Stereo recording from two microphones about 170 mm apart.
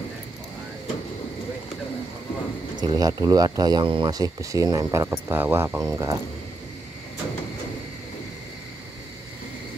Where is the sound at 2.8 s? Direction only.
20° right (ahead or behind).